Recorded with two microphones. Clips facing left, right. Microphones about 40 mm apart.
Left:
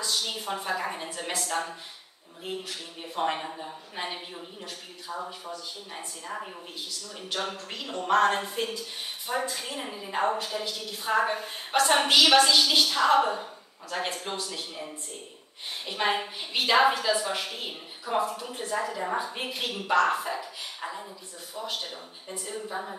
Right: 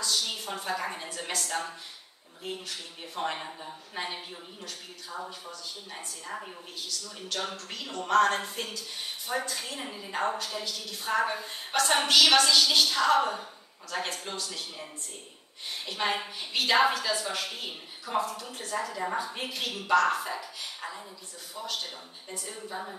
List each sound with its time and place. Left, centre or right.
0.0 s a woman's voice: centre
3.3 s a woman's voice: centre
10.1 s a woman's voice: left
15.8 s a woman's voice: centre